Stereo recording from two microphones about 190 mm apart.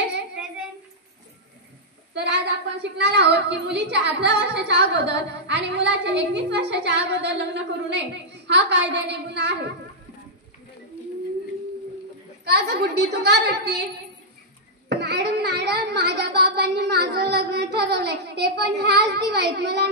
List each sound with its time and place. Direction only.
2.1 s a woman's voice: 65° right (ahead or behind)
12.4 s a woman's voice: 60° right (ahead or behind)
14.9 s a sound: 60° right (ahead or behind)
17.1 s a woman's voice: 60° right (ahead or behind)